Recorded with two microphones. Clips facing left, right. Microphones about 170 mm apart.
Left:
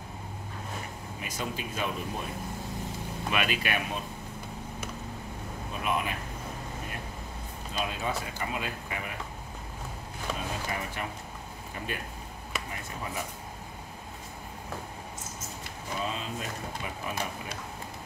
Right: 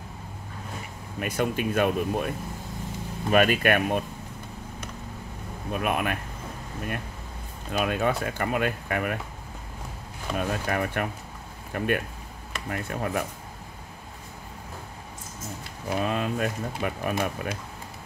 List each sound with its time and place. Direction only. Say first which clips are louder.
1.2 s speech: right 10 dB; 60° right (ahead or behind)
3.3 s speech: right 10 dB; 50° right (ahead or behind)
5.7 s speech: right 5 dB; 60° right (ahead or behind)
7.7 s speech: right 7 dB; 60° right (ahead or behind)
10.3 s speech: right 8 dB; 60° right (ahead or behind)
15.9 s speech: right 8 dB; 60° right (ahead or behind)